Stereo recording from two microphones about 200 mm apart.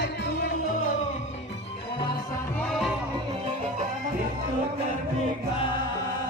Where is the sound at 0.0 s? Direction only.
55° left (ahead or behind).